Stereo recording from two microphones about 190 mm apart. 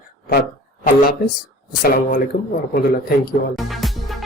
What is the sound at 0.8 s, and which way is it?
A woman's voice, 45° left (ahead or behind).